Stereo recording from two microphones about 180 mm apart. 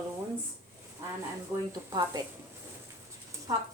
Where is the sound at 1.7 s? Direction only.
20° right (ahead or behind).